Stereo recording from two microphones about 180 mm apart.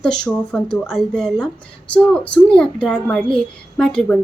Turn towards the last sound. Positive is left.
turn(degrees=5)  # may be behind; listen again after turning